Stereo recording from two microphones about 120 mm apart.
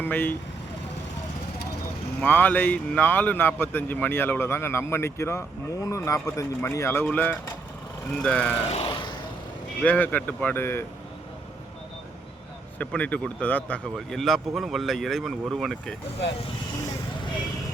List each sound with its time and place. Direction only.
0.0 s speech: 15° left (ahead or behind)
2.2 s speech: 15° left (ahead or behind)
8.7 s vehicle: 50° left (ahead or behind)
9.8 s speech: 15° left (ahead or behind)
12.8 s speech: 10° left (ahead or behind)